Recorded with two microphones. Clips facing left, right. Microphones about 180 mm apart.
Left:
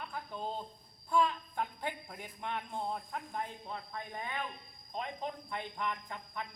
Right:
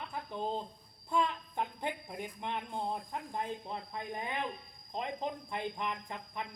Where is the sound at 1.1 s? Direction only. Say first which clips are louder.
Left 2 dB; 20° right (ahead or behind).